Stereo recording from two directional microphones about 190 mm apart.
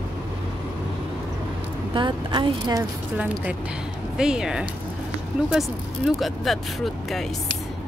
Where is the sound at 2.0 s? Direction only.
25° right (ahead or behind).